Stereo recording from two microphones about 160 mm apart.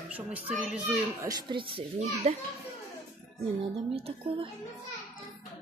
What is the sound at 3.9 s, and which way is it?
Speech, 35° right (ahead or behind).